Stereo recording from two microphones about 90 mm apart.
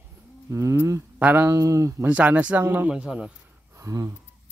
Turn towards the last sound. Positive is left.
turn(degrees=-35)  # may be behind; listen again after turning